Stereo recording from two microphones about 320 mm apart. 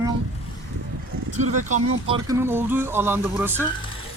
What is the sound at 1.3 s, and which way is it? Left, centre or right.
Speech, right.